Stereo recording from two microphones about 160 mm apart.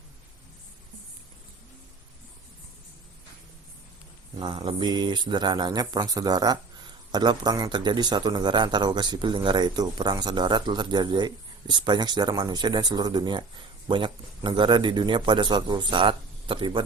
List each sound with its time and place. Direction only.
4.4 s speech: 30° right (ahead or behind)